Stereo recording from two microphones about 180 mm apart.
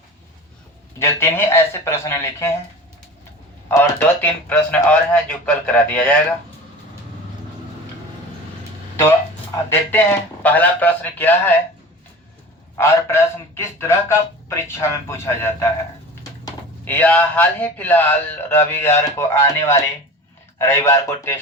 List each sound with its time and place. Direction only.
0.9 s a man's voice: 15° left (ahead or behind)
3.7 s a man's voice: 15° left (ahead or behind)
9.6 s a man's voice: 10° left (ahead or behind)
12.7 s a man's voice: 15° left (ahead or behind)
16.8 s a man's voice: 10° left (ahead or behind)